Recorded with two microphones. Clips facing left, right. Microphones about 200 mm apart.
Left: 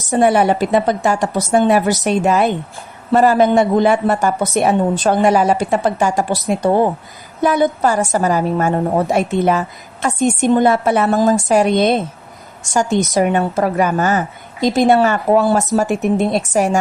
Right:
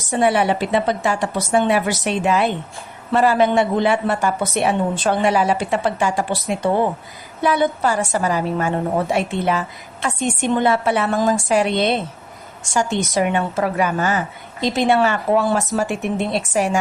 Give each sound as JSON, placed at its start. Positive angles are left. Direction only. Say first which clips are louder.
{"t": 0.1, "sound": "a woman's voice", "louder": "left 4 dB", "side_deg": 45}